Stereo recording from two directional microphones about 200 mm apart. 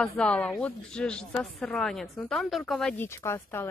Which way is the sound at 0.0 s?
5° left (ahead or behind).